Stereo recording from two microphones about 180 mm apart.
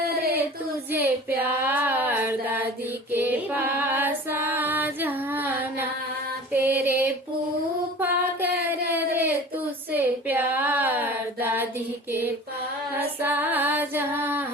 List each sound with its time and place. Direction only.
0.2 s a sound: 60° right (ahead or behind)
0.9 s child singing: 10° right (ahead or behind)
3.1 s female singing: 10° right (ahead or behind)
8.0 s music: 10° right (ahead or behind)
9.9 s a sound: 10° right (ahead or behind)
13.0 s female singing: 10° right (ahead or behind)